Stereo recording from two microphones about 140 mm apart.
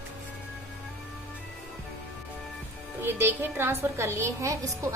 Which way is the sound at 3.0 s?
15° right (ahead or behind).